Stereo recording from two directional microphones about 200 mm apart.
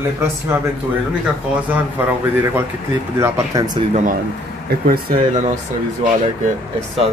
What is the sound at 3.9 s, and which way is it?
Speech, 40° right (ahead or behind).